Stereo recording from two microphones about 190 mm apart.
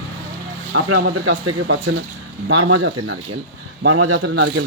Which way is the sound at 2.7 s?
75° right (ahead or behind).